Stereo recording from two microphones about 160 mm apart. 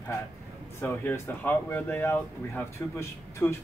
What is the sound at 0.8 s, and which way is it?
Speech, 15° left (ahead or behind).